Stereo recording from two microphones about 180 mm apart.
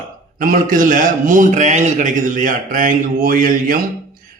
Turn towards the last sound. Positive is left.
turn(degrees=-50)  # may be behind; listen again after turning